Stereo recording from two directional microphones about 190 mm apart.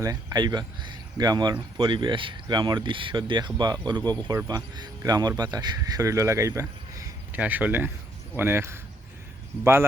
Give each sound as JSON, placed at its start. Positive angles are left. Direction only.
{"t": 0.0, "sound": "speech", "side_deg": -20}